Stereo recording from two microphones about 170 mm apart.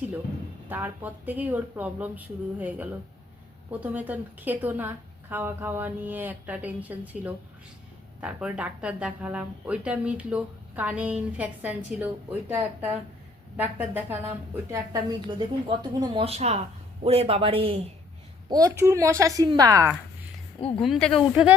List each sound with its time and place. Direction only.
0.7 s a woman's voice: 10° right (ahead or behind)
15.3 s speech: 25° right (ahead or behind)
16.2 s speech: 40° right (ahead or behind)
18.4 s speech: 20° right (ahead or behind)
20.6 s speech: 35° left (ahead or behind)
20.8 s speech: centre (ahead or behind)